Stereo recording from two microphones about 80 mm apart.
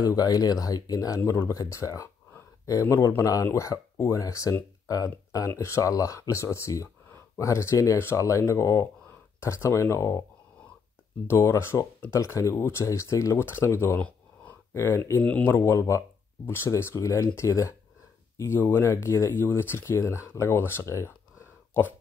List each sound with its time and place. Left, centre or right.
0.1 s speech: left
5.5 s speech: left
11.2 s speech: left
13.9 s a sound: centre
14.7 s speech: left